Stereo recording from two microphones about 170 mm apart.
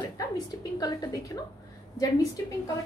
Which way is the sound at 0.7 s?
20° left (ahead or behind).